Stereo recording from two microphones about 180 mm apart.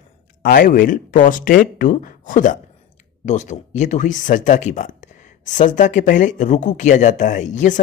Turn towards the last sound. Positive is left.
turn(degrees=45)  # may be behind; listen again after turning